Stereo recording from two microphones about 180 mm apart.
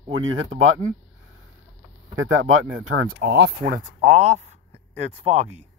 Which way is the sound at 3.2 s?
65° right (ahead or behind).